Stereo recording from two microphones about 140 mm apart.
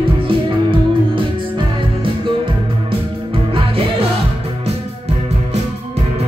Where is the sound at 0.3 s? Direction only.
40° right (ahead or behind).